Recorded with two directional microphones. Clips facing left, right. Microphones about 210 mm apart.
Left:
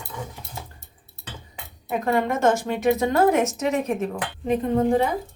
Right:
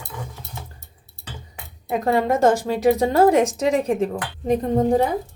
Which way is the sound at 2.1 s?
35° right (ahead or behind).